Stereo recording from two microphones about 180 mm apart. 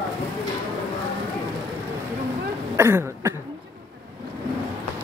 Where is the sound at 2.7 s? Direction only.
15° right (ahead or behind).